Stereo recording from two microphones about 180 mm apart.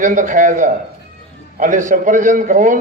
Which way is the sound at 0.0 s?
45° right (ahead or behind).